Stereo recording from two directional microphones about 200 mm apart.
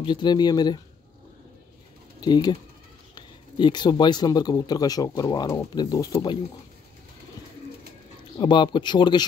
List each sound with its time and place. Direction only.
0.0 s speech: 20° left (ahead or behind)
2.1 s speech: 20° left (ahead or behind)
8.4 s speech: 25° left (ahead or behind)